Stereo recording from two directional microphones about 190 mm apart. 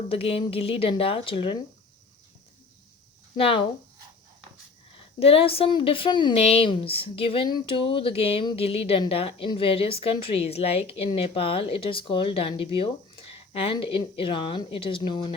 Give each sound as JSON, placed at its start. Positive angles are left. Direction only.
{"t": 0.1, "sound": "a woman's voice", "side_deg": 30}
{"t": 3.3, "sound": "a woman's voice", "side_deg": 30}
{"t": 5.2, "sound": "a woman's voice", "side_deg": 30}